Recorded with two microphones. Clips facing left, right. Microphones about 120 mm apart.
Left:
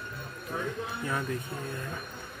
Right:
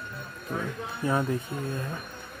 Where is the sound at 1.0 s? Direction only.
30° right (ahead or behind).